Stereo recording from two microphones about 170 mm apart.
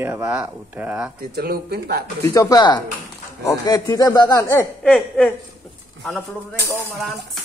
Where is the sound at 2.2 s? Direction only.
20° left (ahead or behind).